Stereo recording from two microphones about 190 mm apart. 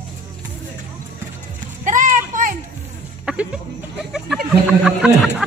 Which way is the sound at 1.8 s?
40° right (ahead or behind).